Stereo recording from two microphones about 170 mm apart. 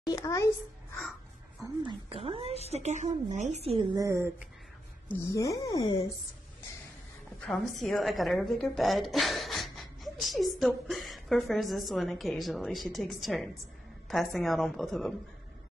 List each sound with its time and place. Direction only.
0.0 s speech: 20° left (ahead or behind)
1.9 s a woman's voice: 35° right (ahead or behind)
3.9 s speech: 20° right (ahead or behind)
5.3 s speech: 20° left (ahead or behind)
7.4 s a woman's voice: centre (ahead or behind)